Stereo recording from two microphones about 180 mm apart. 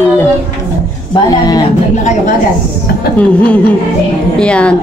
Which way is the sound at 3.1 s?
10° left (ahead or behind).